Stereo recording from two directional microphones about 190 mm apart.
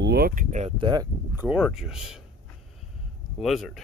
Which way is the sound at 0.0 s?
55° right (ahead or behind).